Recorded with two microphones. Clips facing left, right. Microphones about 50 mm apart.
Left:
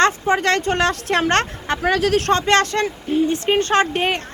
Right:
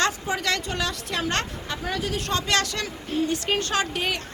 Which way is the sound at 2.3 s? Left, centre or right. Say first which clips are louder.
Left 5 dB; left.